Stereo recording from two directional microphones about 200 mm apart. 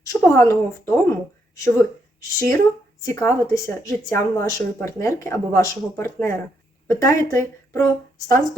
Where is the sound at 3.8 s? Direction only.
15° left (ahead or behind).